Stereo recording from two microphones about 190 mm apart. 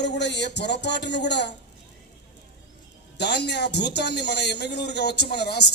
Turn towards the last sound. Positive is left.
turn(degrees=60)  # may be behind; listen again after turning